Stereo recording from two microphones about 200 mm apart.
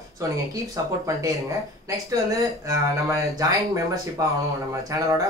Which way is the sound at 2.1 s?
15° right (ahead or behind).